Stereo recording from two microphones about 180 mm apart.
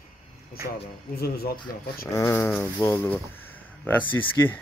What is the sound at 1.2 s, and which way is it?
Speech, 60° left (ahead or behind).